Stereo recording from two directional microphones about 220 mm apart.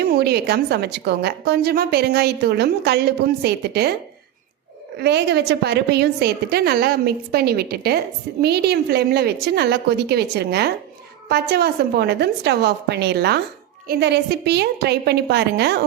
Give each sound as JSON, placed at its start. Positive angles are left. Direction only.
{"t": 0.0, "sound": "a woman's voice", "side_deg": -45}
{"t": 4.9, "sound": "a woman's voice", "side_deg": -50}